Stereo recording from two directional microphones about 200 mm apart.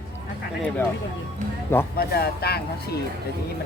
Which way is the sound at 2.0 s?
50° left (ahead or behind).